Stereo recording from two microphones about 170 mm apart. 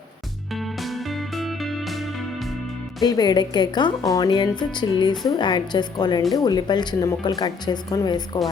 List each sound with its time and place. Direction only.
0.5 s music: centre (ahead or behind)
3.0 s a woman's voice: 25° left (ahead or behind)